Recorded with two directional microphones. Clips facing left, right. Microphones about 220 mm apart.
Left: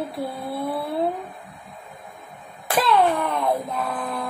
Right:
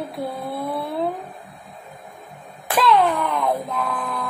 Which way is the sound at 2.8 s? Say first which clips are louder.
Right 1 dB; centre (ahead or behind).